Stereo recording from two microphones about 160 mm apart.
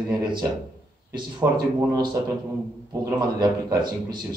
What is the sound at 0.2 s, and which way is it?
Speech, 30° right (ahead or behind).